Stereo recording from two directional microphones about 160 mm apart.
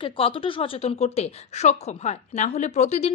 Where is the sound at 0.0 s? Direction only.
35° left (ahead or behind).